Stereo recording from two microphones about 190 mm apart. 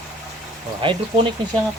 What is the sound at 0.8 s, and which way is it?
Speech, 25° right (ahead or behind).